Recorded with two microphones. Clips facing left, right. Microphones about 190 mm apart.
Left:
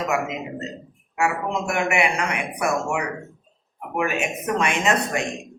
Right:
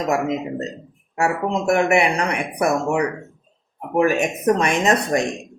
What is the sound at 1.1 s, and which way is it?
Speech, 35° right (ahead or behind).